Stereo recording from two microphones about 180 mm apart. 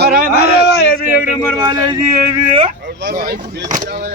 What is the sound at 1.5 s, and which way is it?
Speech, 20° right (ahead or behind).